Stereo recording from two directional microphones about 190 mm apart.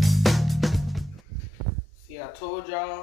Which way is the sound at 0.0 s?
Centre (ahead or behind).